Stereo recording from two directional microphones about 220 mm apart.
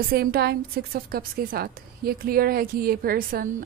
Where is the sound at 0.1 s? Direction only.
45° right (ahead or behind).